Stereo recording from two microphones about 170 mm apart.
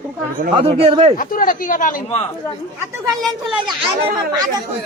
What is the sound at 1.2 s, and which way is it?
Speech, 55° left (ahead or behind).